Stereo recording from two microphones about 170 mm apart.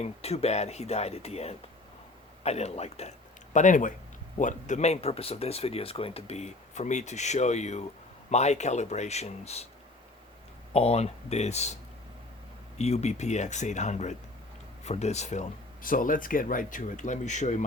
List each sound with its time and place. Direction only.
0.0 s speech: 40° left (ahead or behind)
10.8 s speech: 35° left (ahead or behind)
12.8 s speech: 40° left (ahead or behind)